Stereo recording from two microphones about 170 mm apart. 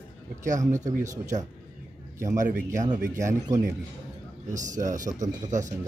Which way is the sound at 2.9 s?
20° right (ahead or behind).